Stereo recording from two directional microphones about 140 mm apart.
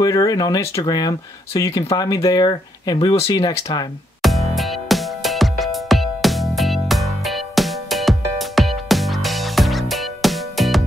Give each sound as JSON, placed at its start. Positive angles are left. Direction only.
{"t": 0.0, "sound": "speech", "side_deg": 25}
{"t": 4.2, "sound": "music", "side_deg": 0}